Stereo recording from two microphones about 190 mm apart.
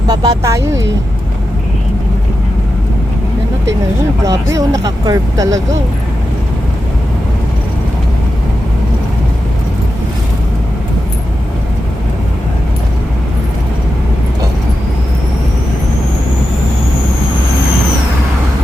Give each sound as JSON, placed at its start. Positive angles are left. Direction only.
{"t": 0.1, "sound": "speech", "side_deg": -20}
{"t": 4.3, "sound": "speech", "side_deg": -15}